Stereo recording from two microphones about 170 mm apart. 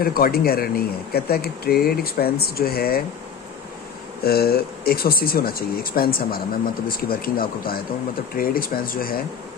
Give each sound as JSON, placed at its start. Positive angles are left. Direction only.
{"t": 0.0, "sound": "speech", "side_deg": 60}
{"t": 4.2, "sound": "speech", "side_deg": 65}